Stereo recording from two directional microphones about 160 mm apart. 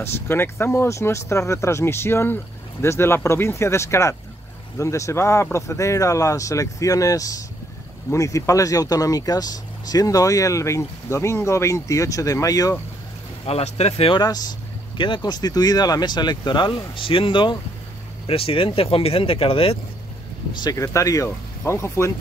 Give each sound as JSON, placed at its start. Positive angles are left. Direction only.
{"t": 0.0, "sound": "speech", "side_deg": 15}
{"t": 13.5, "sound": "speech", "side_deg": 40}
{"t": 20.6, "sound": "speech", "side_deg": 20}